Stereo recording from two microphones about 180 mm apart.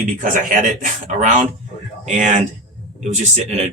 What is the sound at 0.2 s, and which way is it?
Speech, 45° right (ahead or behind).